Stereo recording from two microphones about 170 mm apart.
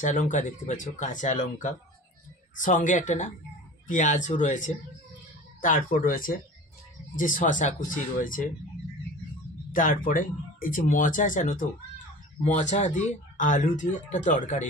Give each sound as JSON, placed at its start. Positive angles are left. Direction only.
{"t": 0.0, "sound": "speech", "side_deg": 50}
{"t": 9.7, "sound": "speech", "side_deg": 50}
{"t": 12.5, "sound": "speech", "side_deg": 45}